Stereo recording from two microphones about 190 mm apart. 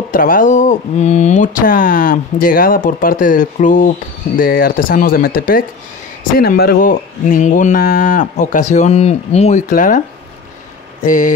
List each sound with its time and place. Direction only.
0.1 s speech: 45° left (ahead or behind)
11.1 s speech: 45° left (ahead or behind)